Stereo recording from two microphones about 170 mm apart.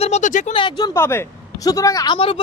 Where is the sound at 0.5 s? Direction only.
30° left (ahead or behind).